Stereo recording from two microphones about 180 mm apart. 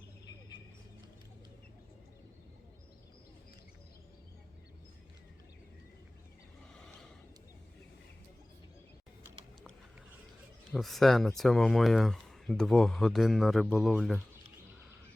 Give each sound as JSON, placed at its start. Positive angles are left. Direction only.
{"t": 10.7, "sound": "speech", "side_deg": 0}